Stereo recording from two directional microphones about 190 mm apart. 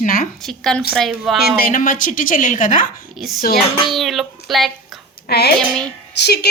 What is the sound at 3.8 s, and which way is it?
Speech, centre (ahead or behind).